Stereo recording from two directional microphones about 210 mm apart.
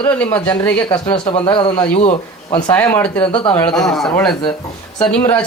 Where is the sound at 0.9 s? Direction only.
20° left (ahead or behind).